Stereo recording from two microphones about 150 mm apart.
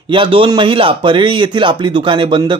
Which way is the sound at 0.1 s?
35° right (ahead or behind).